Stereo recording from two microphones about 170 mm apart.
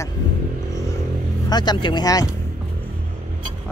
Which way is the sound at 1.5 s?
25° left (ahead or behind).